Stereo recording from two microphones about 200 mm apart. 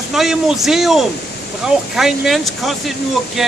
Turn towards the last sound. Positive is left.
turn(degrees=0)  # may be behind; listen again after turning